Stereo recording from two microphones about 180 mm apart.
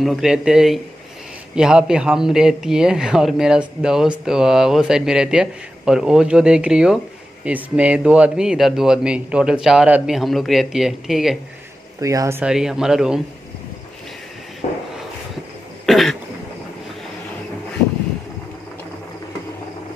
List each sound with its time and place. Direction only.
0.0 s speech: centre (ahead or behind)
12.0 s speech: 20° right (ahead or behind)
12.4 s speech: 5° right (ahead or behind)
14.6 s a sound: 40° left (ahead or behind)
15.8 s throat clearing: centre (ahead or behind)